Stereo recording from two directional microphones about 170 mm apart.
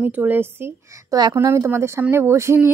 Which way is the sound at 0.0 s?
10° right (ahead or behind).